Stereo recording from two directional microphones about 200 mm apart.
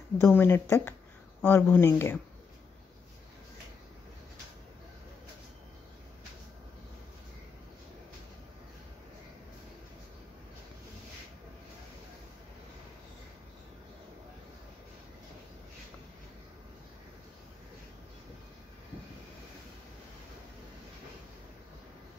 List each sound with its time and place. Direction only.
0.2 s speech: 10° left (ahead or behind)